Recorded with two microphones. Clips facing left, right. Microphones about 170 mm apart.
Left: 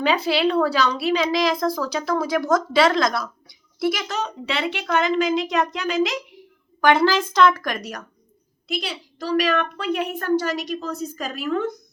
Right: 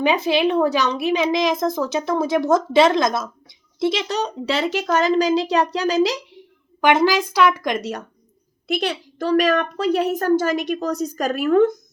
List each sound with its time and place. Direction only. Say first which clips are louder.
0.0 s a woman's voice: right 2 dB; 20° right (ahead or behind); by 6.1 s 35° right (ahead or behind)
6.8 s a woman's voice: right 1 dB; 15° right (ahead or behind)
8.6 s a woman's voice: right 6 dB; 60° right (ahead or behind)